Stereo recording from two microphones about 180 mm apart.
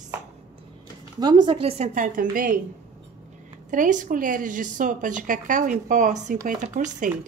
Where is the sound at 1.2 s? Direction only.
25° right (ahead or behind); by 2.6 s 50° right (ahead or behind).